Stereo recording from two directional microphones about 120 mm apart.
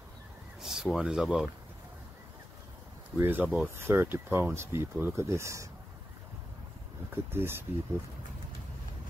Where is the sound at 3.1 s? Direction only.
15° right (ahead or behind).